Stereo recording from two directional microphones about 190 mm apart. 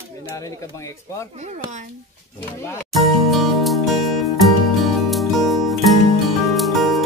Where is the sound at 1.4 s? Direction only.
35° right (ahead or behind).